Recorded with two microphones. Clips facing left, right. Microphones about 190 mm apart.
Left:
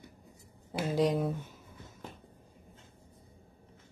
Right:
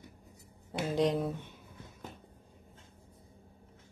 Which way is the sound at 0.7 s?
5° left (ahead or behind).